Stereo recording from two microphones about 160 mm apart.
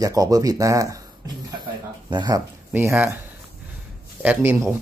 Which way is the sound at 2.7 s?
15° right (ahead or behind).